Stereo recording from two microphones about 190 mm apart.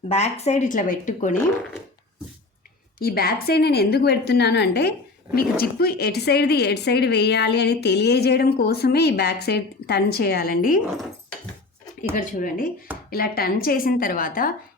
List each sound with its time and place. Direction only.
0.1 s speech: 35° left (ahead or behind)
3.0 s a woman's voice: 55° left (ahead or behind)
12.1 s speech: 45° left (ahead or behind)